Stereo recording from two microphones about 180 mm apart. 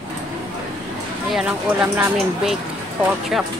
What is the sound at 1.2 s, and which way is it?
Speech, 5° right (ahead or behind).